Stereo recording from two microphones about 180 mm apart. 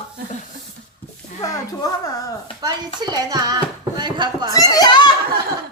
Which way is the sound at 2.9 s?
25° right (ahead or behind).